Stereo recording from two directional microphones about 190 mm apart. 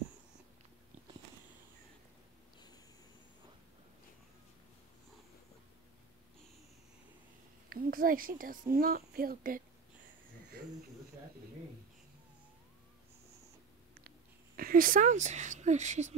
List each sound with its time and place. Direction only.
7.7 s speech: 50° right (ahead or behind)
14.6 s speech: 50° right (ahead or behind)